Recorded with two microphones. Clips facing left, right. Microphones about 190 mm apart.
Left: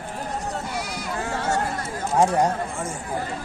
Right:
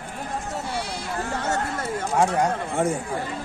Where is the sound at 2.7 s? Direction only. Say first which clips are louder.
Right 8 dB; 65° right (ahead or behind).